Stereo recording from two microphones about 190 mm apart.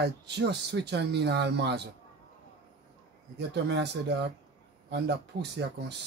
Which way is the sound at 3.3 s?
65° right (ahead or behind).